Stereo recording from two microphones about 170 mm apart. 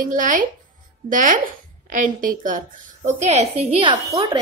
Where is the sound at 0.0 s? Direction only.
50° right (ahead or behind); by 4.4 s 35° right (ahead or behind).